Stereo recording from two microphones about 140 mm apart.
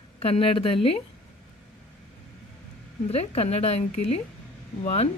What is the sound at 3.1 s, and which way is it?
Speech, 45° left (ahead or behind).